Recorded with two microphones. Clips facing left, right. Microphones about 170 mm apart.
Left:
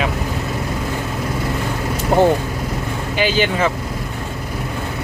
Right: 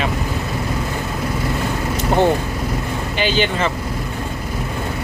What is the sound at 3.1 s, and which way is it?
Speech, 5° left (ahead or behind).